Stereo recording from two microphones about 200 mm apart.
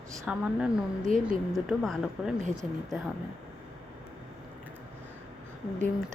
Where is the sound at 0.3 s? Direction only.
Centre (ahead or behind).